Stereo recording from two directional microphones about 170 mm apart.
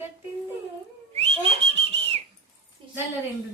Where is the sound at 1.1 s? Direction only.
35° right (ahead or behind).